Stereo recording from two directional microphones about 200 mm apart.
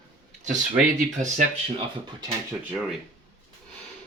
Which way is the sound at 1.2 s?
40° right (ahead or behind).